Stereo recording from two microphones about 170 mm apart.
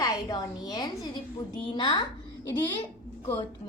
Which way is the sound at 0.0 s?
20° left (ahead or behind).